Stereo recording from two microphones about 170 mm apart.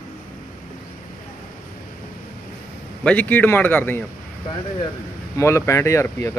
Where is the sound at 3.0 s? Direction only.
10° left (ahead or behind).